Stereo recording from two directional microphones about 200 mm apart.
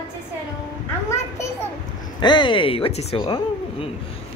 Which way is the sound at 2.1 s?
20° left (ahead or behind).